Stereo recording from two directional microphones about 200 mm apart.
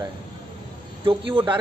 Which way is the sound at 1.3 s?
25° right (ahead or behind).